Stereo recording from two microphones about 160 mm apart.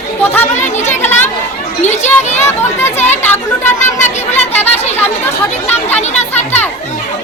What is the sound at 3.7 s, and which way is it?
Speech, 50° left (ahead or behind).